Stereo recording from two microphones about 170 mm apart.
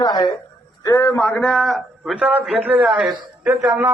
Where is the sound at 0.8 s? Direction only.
15° left (ahead or behind).